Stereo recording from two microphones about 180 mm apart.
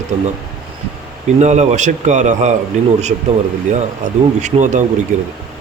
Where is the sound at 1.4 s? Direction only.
40° right (ahead or behind).